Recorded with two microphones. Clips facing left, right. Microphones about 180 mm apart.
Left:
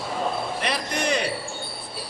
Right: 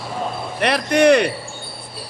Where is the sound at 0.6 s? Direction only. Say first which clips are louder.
Right 16 dB; 65° right (ahead or behind).